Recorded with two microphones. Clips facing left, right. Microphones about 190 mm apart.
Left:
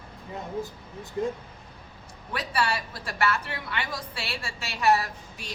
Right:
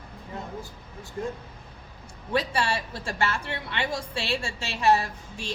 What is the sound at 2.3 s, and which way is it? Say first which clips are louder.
Speech: right 2 dB; 25° right (ahead or behind).